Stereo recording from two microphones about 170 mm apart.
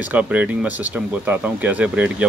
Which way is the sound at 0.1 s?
10° right (ahead or behind).